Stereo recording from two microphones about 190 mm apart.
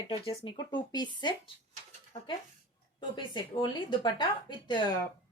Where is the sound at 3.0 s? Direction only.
25° left (ahead or behind).